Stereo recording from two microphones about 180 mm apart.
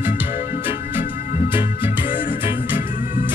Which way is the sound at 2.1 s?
50° left (ahead or behind).